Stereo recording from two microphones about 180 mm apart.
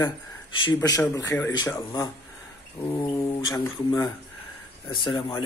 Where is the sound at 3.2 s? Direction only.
15° left (ahead or behind).